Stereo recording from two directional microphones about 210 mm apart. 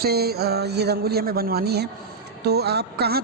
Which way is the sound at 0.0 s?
50° right (ahead or behind).